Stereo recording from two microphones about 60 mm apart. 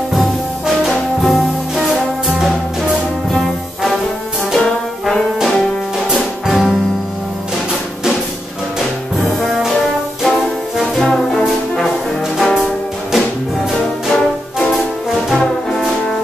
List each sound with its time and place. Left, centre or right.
1.2 s music: centre
6.1 s music: centre
9.4 s brass instrument: centre
10.2 s music: centre
11.1 s music: centre
12.4 s music: centre
14.1 s music: centre
14.8 s music: centre